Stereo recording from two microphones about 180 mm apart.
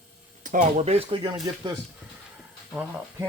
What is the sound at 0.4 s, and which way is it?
Speech, 45° right (ahead or behind).